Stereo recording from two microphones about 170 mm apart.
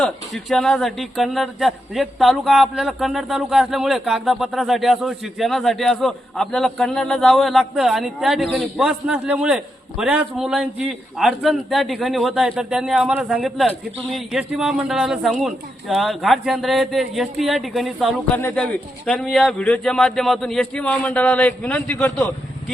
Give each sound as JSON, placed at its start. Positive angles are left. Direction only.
{"t": 0.0, "sound": "speech", "side_deg": 5}